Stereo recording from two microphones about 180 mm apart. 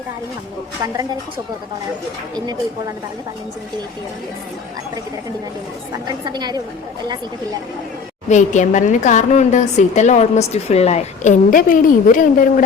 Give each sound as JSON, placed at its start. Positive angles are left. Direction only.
{"t": 6.1, "sound": "a woman's voice", "side_deg": -20}
{"t": 8.3, "sound": "a woman's voice", "side_deg": 40}